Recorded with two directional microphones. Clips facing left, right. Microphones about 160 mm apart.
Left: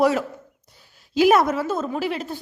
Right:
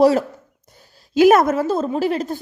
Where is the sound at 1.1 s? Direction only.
50° right (ahead or behind).